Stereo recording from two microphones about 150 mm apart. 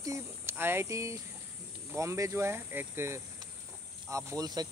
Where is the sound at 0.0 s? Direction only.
20° right (ahead or behind).